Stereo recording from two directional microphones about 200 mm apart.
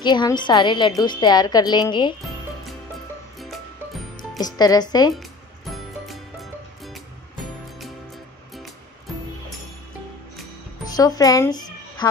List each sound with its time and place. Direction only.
0.0 s a woman's voice: 20° left (ahead or behind)
3.3 s music: centre (ahead or behind)
4.4 s a woman's voice: 20° left (ahead or behind)
5.7 s music: centre (ahead or behind)
11.0 s speech: 20° left (ahead or behind)